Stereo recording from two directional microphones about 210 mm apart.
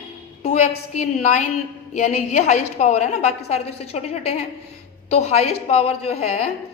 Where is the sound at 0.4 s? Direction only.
30° left (ahead or behind).